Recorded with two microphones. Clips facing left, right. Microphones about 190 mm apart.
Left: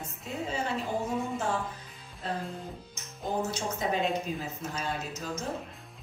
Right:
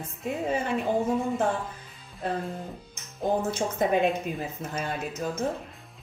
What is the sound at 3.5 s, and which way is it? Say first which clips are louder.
Speech: right 6 dB; 55° right (ahead or behind).